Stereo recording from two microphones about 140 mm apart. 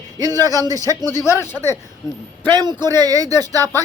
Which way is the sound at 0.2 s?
25° right (ahead or behind).